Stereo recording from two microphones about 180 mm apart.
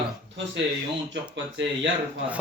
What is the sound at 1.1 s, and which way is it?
Speech, 85° right.